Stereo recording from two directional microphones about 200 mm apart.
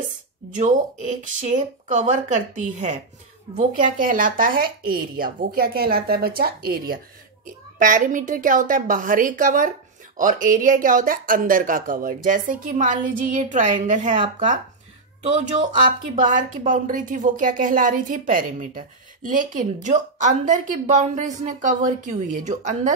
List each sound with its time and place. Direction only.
0.6 s speech: 40° right (ahead or behind)
15.3 s speech: 35° right (ahead or behind)